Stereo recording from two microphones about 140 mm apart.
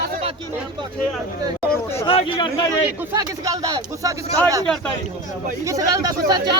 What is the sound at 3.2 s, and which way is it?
Speech, 25° right (ahead or behind).